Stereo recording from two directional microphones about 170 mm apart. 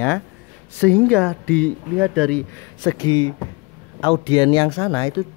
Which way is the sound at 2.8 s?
25° left (ahead or behind).